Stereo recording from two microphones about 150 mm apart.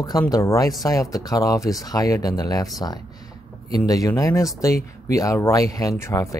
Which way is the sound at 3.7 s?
25° left (ahead or behind).